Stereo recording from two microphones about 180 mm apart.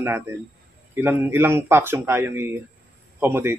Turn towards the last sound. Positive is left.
turn(degrees=-10)  # may be behind; listen again after turning